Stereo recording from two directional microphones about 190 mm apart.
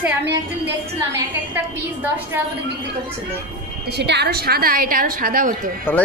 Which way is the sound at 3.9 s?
65° right (ahead or behind).